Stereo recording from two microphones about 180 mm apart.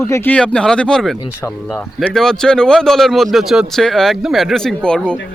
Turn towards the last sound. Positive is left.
turn(degrees=5)  # may be behind; listen again after turning